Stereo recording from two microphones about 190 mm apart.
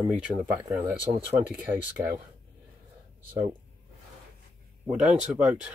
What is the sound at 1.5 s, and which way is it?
Speech, 10° right (ahead or behind).